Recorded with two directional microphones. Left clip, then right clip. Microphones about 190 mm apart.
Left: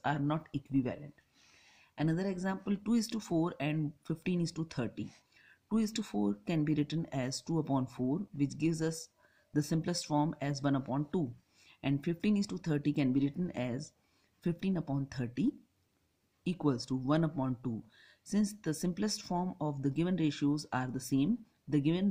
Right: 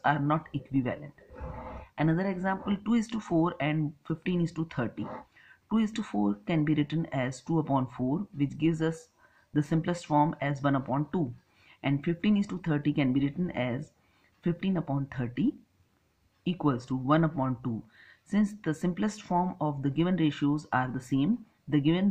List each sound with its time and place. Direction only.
0.0 s speech: 45° left (ahead or behind)